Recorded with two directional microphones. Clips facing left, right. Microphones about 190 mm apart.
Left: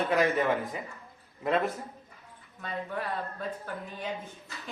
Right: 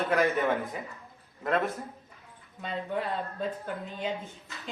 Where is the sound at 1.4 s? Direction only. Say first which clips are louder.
Left 1 dB; centre (ahead or behind).